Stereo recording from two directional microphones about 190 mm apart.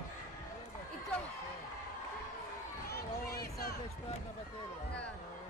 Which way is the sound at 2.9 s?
55° left (ahead or behind).